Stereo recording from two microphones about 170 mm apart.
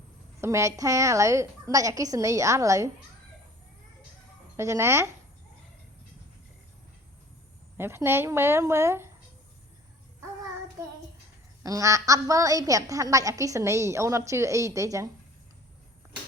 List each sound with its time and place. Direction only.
0.4 s a woman's voice: 15° right (ahead or behind)
4.5 s speech: 15° right (ahead or behind)
7.8 s speech: 15° right (ahead or behind)
11.6 s a woman's voice: 20° right (ahead or behind)